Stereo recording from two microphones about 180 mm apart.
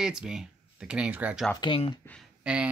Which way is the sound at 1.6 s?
25° left (ahead or behind).